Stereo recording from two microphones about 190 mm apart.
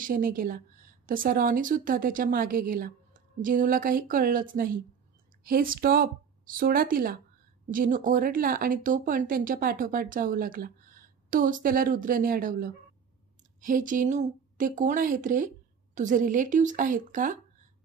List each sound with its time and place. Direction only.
0.0 s speech: 45° right (ahead or behind)